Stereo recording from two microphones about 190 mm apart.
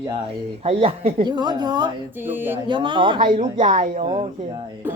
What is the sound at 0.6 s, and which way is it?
Speech, 30° right (ahead or behind).